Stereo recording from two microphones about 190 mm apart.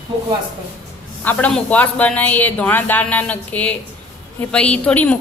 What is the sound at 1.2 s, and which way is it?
A woman's voice, 10° left (ahead or behind).